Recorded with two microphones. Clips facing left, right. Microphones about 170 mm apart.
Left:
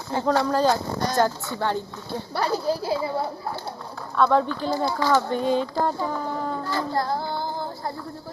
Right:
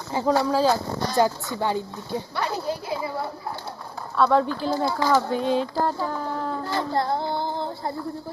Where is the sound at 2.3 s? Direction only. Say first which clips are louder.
Left 6 dB; 35° left (ahead or behind).